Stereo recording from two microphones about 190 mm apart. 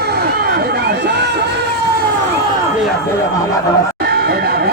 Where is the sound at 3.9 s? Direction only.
55° right (ahead or behind).